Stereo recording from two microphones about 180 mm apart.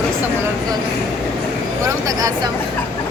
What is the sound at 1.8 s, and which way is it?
Speech, 20° right (ahead or behind).